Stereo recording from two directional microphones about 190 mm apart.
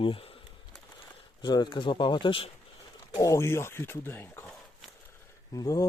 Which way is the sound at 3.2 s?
15° left (ahead or behind).